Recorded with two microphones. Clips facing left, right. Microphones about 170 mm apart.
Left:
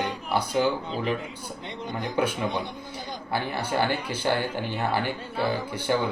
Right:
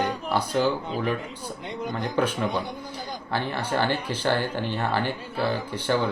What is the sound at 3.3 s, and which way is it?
Speech, 10° left (ahead or behind).